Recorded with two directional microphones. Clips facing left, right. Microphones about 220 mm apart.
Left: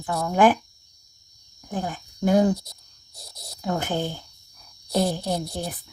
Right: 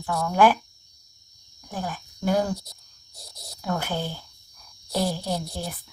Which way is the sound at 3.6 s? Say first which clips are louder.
Left 2 dB; 20° left (ahead or behind).